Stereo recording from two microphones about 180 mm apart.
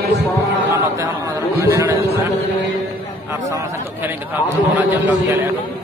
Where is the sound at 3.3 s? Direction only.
15° right (ahead or behind).